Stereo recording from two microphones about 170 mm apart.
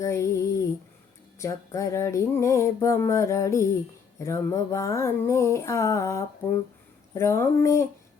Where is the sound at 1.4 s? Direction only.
20° left (ahead or behind).